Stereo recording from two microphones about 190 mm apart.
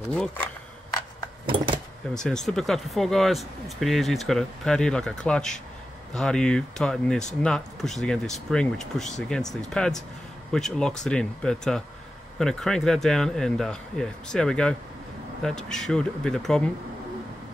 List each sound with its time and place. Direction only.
0.1 s speech: 5° left (ahead or behind)
1.4 s a sound: 25° right (ahead or behind)
2.1 s speech: centre (ahead or behind)